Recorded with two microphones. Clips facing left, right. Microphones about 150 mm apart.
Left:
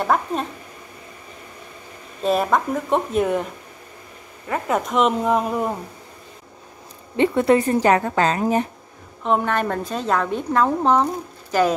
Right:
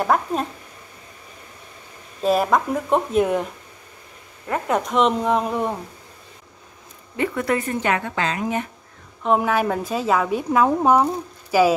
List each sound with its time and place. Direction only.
0.0 s a woman's voice: centre (ahead or behind)
2.2 s a woman's voice: centre (ahead or behind)
4.5 s a woman's voice: centre (ahead or behind)
7.2 s a woman's voice: 25° left (ahead or behind)
9.2 s a woman's voice: 5° right (ahead or behind)